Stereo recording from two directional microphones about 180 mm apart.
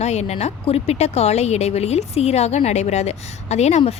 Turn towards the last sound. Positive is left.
turn(degrees=35)  # may be behind; listen again after turning